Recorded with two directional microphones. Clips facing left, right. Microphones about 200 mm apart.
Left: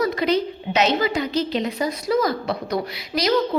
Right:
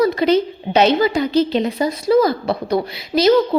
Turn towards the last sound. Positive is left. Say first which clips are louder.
# right 8 dB
turn(degrees=-30)  # may be behind; listen again after turning